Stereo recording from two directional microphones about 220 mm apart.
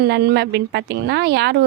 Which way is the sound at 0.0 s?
50° right (ahead or behind).